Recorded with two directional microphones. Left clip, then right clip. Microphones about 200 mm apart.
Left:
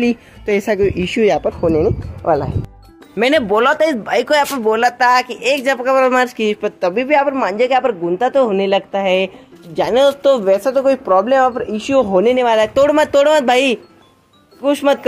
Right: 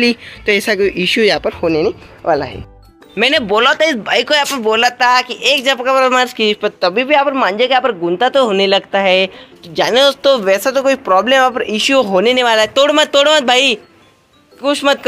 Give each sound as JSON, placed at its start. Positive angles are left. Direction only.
{"t": 0.0, "sound": "speech", "side_deg": 5}